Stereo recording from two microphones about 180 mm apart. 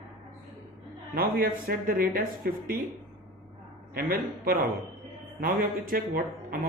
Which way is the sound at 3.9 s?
55° right (ahead or behind).